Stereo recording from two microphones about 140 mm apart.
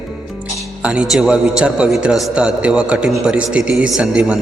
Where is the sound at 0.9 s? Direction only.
5° right (ahead or behind).